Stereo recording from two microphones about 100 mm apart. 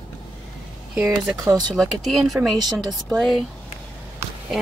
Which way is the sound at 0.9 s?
5° right (ahead or behind).